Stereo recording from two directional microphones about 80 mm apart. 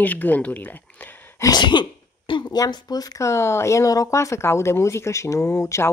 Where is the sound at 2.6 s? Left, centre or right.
Left.